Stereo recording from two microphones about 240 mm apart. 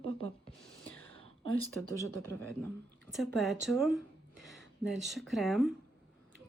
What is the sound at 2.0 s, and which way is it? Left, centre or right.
Speech, centre.